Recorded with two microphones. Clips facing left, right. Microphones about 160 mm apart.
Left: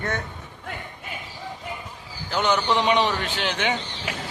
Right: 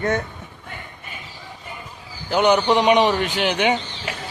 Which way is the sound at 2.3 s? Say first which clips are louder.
Right 6 dB; 15° right (ahead or behind).